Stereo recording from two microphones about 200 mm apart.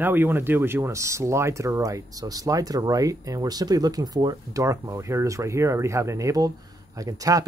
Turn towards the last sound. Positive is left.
turn(degrees=-15)  # may be behind; listen again after turning